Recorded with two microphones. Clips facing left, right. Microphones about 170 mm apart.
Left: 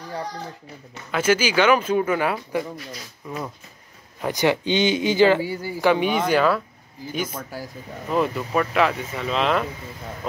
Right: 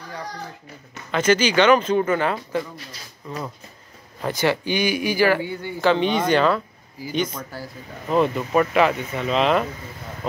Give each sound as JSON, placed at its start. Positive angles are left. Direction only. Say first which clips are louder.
{"t": 1.1, "sound": "speech", "louder": "right 2 dB", "side_deg": 10}
{"t": 5.4, "sound": "speech", "louder": "even", "side_deg": 5}